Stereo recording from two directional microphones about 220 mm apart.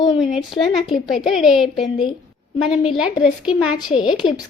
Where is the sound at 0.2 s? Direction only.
Centre (ahead or behind).